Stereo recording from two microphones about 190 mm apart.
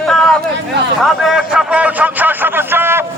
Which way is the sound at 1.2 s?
Centre (ahead or behind).